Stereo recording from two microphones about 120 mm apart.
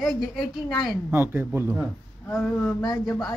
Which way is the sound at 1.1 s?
20° right (ahead or behind).